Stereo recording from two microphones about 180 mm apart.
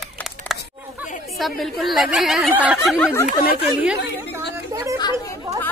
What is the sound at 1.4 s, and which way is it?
A woman's voice, centre (ahead or behind).